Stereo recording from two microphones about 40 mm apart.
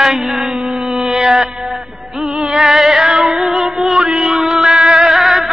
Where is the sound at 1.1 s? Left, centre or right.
Centre.